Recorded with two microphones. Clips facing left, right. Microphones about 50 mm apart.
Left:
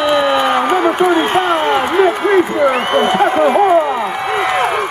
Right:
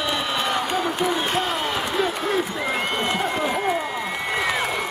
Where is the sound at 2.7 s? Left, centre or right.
Left.